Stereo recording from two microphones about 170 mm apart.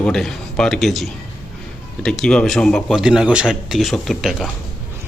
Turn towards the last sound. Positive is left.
turn(degrees=0)  # may be behind; listen again after turning